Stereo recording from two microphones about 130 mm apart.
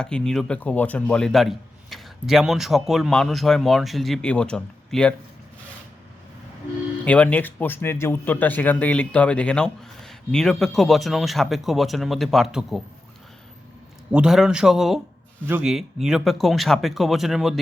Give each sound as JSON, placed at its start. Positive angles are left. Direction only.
{"t": 0.0, "sound": "speech", "side_deg": 5}
{"t": 7.0, "sound": "speech", "side_deg": 10}
{"t": 14.1, "sound": "speech", "side_deg": -5}